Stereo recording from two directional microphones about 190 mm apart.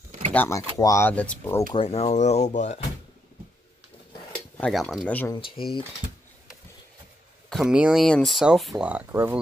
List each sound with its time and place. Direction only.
0.3 s speech: 10° left (ahead or behind)
1.7 s speech: 30° left (ahead or behind)
4.6 s speech: 5° left (ahead or behind)
5.6 s speech: 30° left (ahead or behind)
7.4 s speech: centre (ahead or behind)